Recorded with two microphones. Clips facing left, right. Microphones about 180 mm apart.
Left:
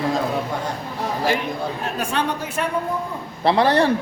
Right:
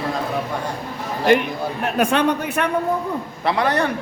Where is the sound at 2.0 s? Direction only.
60° right (ahead or behind).